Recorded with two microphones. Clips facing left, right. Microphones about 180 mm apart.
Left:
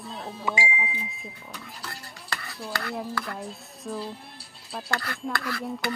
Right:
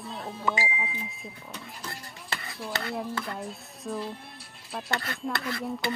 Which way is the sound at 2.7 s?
25° right (ahead or behind).